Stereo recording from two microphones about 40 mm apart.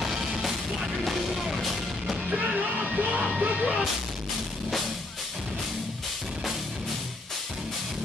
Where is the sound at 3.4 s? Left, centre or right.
Right.